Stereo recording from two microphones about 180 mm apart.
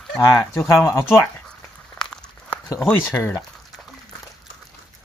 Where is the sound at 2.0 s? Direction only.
5° left (ahead or behind).